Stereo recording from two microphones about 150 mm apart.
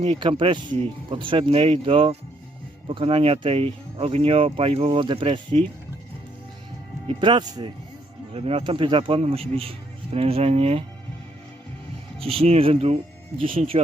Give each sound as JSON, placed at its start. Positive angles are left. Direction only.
{"t": 0.0, "sound": "speech", "side_deg": -35}
{"t": 7.1, "sound": "speech", "side_deg": -30}
{"t": 8.3, "sound": "speech", "side_deg": -45}
{"t": 12.2, "sound": "speech", "side_deg": -40}